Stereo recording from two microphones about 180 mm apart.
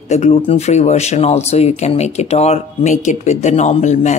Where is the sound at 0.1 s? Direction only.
40° left (ahead or behind).